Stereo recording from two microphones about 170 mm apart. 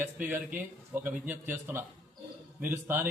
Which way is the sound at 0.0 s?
10° right (ahead or behind).